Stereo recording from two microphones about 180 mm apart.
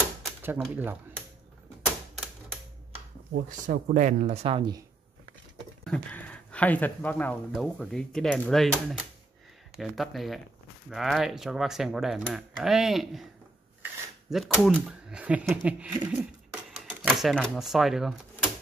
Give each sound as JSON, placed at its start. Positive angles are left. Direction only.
{"t": 0.4, "sound": "speech", "side_deg": -10}
{"t": 3.3, "sound": "speech", "side_deg": -50}
{"t": 5.9, "sound": "speech", "side_deg": 10}
{"t": 14.3, "sound": "speech", "side_deg": 0}